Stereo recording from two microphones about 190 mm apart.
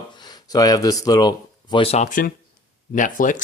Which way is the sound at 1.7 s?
30° left (ahead or behind).